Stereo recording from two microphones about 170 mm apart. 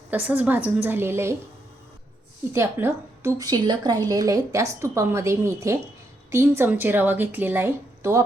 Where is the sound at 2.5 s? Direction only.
15° right (ahead or behind).